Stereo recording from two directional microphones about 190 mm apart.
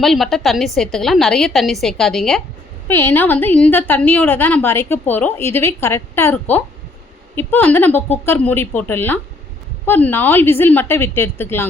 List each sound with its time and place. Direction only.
0.0 s a woman's voice: centre (ahead or behind)